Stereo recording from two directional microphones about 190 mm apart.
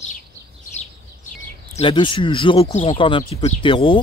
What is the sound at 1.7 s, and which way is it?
Speech, 25° left (ahead or behind).